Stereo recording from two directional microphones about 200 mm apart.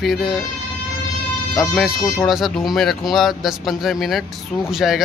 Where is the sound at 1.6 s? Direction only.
Centre (ahead or behind).